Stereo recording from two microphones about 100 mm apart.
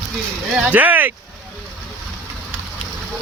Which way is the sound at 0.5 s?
15° right (ahead or behind).